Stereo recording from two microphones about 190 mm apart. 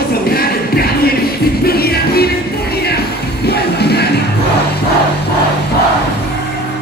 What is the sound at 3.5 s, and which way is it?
Music, 60° left (ahead or behind).